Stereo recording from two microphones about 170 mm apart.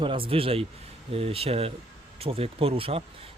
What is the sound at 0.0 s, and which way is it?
Speech, 30° right (ahead or behind).